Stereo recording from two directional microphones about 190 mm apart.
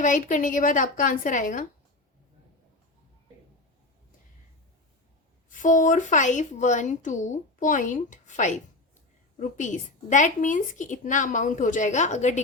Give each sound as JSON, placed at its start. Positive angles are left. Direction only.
{"t": 0.0, "sound": "a woman's voice", "side_deg": 40}
{"t": 5.5, "sound": "speech", "side_deg": 40}